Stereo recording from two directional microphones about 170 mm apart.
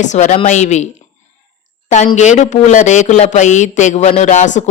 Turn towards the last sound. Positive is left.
turn(degrees=45)  # may be behind; listen again after turning